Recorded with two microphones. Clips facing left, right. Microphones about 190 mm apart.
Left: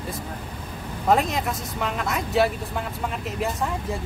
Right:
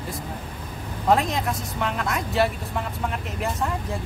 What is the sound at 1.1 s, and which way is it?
Speech, centre (ahead or behind).